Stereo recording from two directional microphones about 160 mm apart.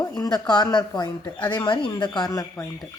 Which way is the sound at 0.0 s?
25° left (ahead or behind).